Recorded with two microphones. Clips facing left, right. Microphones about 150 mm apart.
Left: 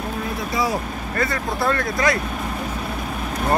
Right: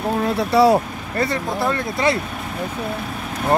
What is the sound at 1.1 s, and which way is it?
Speech, 25° right (ahead or behind).